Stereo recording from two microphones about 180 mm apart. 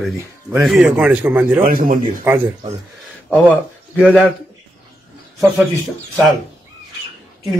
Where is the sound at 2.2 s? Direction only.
10° right (ahead or behind).